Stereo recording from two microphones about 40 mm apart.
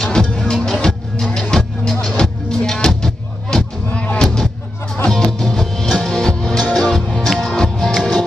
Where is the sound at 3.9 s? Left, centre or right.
Left.